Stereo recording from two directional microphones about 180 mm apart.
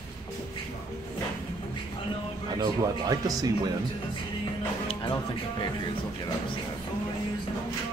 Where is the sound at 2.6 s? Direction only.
20° right (ahead or behind).